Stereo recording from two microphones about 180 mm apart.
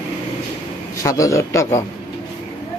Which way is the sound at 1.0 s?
15° left (ahead or behind).